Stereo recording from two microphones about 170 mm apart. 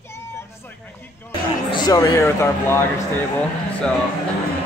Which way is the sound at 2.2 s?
15° left (ahead or behind).